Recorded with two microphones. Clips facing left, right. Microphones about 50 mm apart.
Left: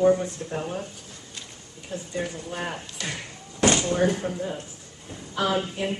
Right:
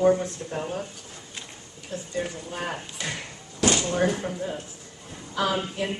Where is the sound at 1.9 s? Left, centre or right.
Centre.